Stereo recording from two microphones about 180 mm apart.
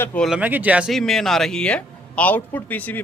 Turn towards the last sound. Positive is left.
turn(degrees=10)  # may be behind; listen again after turning